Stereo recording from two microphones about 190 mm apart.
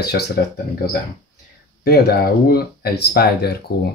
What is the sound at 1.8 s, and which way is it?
Speech, 55° left (ahead or behind).